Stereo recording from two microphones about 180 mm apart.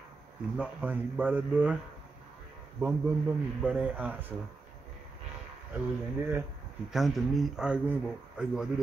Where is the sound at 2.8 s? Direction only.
10° right (ahead or behind).